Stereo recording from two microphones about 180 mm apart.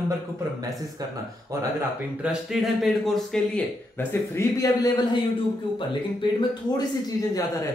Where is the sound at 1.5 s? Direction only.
15° right (ahead or behind).